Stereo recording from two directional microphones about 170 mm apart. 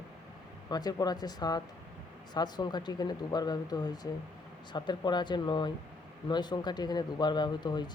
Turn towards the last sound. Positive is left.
turn(degrees=25)  # may be behind; listen again after turning